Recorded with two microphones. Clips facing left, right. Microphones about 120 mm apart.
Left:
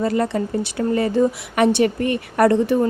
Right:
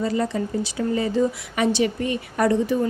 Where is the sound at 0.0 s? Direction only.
55° left (ahead or behind).